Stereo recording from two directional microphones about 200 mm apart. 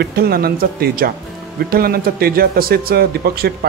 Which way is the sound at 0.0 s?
50° right (ahead or behind).